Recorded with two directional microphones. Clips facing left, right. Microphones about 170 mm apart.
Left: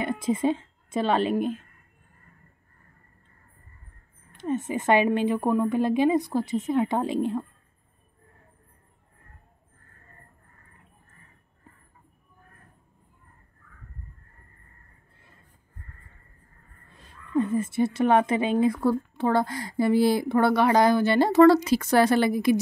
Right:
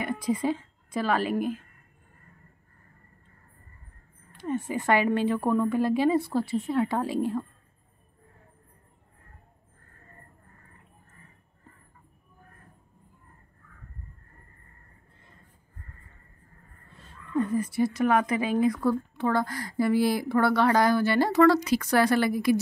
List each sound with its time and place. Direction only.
0.0 s a woman's voice: 25° left (ahead or behind)
4.3 s speech: 20° left (ahead or behind)
16.9 s speech: 15° left (ahead or behind)